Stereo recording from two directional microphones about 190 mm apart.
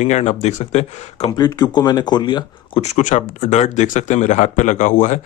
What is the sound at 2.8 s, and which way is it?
Speech, 40° left (ahead or behind).